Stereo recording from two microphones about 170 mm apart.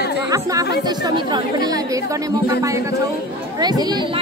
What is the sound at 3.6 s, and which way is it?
Speech, 25° right (ahead or behind).